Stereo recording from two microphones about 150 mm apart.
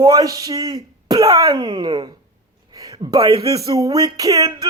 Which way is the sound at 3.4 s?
20° right (ahead or behind).